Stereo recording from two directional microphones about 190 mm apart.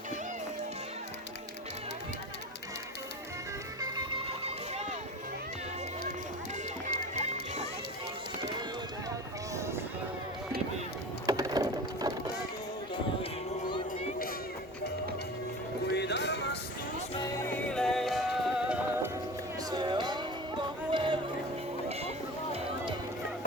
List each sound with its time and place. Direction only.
3.8 s music: 20° right (ahead or behind)
9.6 s music: 15° right (ahead or behind)
11.3 s a sound: 20° right (ahead or behind)
15.9 s a sound: 65° left (ahead or behind)
17.2 s music: 15° left (ahead or behind); by 19.1 s 5° right (ahead or behind)
19.7 s music: 25° right (ahead or behind)